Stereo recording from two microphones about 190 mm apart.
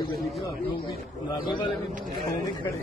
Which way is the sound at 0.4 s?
25° left (ahead or behind).